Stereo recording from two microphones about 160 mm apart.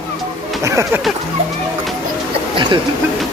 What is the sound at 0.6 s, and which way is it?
Speech, 20° right (ahead or behind).